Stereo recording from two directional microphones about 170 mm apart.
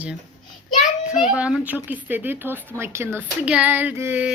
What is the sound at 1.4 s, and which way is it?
Speech, 5° right (ahead or behind).